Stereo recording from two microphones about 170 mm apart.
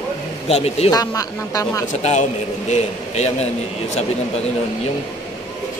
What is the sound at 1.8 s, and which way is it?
A man's voice, 45° left (ahead or behind).